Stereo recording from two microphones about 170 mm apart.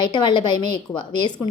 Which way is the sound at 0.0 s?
25° left (ahead or behind).